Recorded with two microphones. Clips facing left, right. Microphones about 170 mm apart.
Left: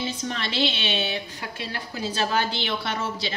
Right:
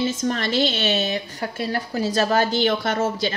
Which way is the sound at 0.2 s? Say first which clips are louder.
Right 5 dB; 45° right (ahead or behind).